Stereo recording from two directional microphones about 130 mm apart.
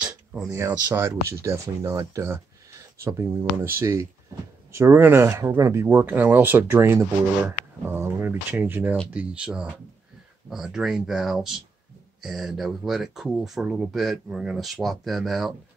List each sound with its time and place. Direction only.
0.5 s speech: 20° right (ahead or behind); by 15.5 s centre (ahead or behind)